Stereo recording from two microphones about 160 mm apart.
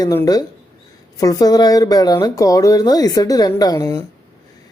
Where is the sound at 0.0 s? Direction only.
20° left (ahead or behind).